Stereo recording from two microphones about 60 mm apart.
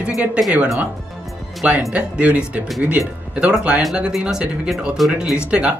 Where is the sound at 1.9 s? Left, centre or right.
Right.